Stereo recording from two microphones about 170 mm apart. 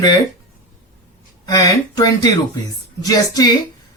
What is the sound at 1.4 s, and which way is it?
Speech, 20° left (ahead or behind).